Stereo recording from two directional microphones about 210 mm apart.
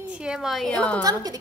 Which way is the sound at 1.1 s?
20° right (ahead or behind).